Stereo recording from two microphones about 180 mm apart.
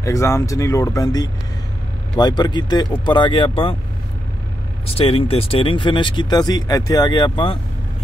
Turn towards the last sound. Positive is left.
turn(degrees=30)  # may be behind; listen again after turning